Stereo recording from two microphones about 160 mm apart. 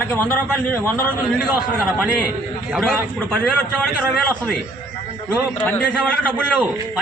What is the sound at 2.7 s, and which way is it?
A man's voice, 5° left (ahead or behind).